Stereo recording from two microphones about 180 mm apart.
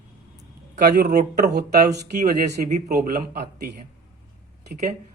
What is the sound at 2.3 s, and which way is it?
Speech, 60° right (ahead or behind).